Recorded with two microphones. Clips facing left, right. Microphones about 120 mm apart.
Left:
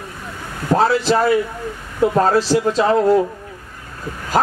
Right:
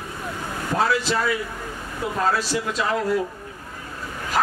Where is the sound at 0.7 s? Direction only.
35° left (ahead or behind).